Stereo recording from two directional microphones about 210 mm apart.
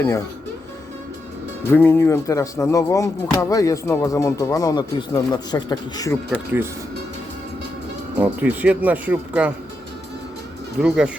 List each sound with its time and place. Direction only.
1.7 s speech: 10° left (ahead or behind)
6.3 s speech: 10° right (ahead or behind)
8.2 s speech: 5° right (ahead or behind)
10.8 s speech: centre (ahead or behind)